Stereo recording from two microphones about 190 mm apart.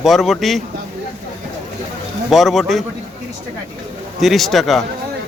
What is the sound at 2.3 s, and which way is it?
Speech, centre (ahead or behind).